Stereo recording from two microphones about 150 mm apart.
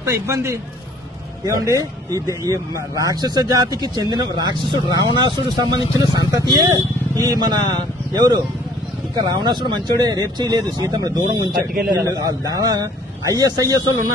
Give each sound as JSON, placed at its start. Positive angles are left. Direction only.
{"t": 0.0, "sound": "a man's voice", "side_deg": -15}